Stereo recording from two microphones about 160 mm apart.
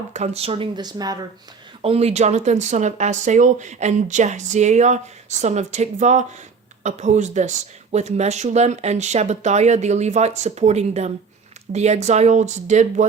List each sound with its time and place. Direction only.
0.1 s speech: 40° right (ahead or behind)
0.8 s speech: 25° right (ahead or behind)
1.8 s speech: 40° right (ahead or behind)